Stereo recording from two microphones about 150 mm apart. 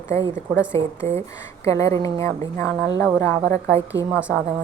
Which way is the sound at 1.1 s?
40° right (ahead or behind).